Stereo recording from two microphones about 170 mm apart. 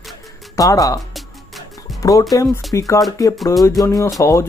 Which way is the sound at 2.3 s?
20° left (ahead or behind).